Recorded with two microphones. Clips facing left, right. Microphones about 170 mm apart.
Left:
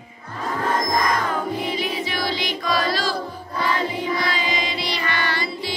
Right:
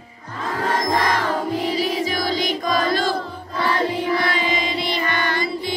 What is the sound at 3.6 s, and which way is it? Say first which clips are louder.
Music: right 3 dB; 65° right (ahead or behind).